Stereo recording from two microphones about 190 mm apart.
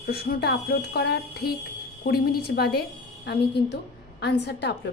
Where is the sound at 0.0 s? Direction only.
55° left (ahead or behind).